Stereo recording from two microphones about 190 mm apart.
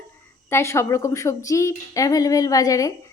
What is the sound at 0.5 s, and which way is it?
Speech, 15° left (ahead or behind).